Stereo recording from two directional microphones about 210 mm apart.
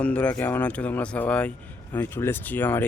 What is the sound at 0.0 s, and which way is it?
Speech, 5° left (ahead or behind).